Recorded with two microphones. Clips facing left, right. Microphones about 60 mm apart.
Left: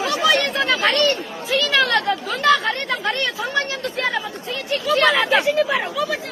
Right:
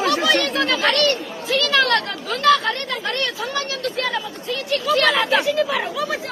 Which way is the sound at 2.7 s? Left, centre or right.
Centre.